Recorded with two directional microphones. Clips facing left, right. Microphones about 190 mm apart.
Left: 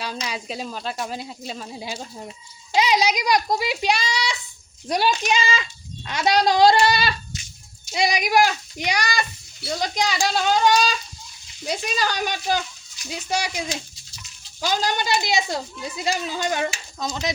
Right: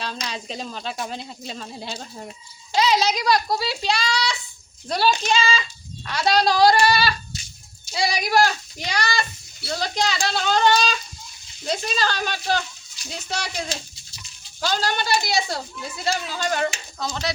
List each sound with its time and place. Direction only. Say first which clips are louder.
0.0 s speech: left 1 dB; 10° left (ahead or behind)